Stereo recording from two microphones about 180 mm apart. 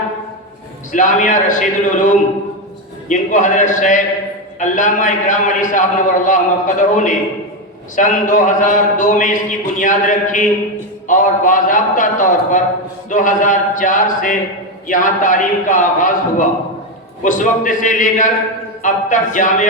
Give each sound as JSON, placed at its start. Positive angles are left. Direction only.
{"t": 0.9, "sound": "a man's voice", "side_deg": 45}